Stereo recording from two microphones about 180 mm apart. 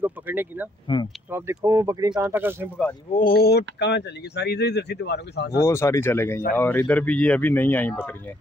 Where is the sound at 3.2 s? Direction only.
55° left (ahead or behind).